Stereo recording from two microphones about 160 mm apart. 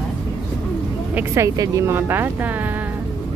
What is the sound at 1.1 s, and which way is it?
Speech, 20° right (ahead or behind).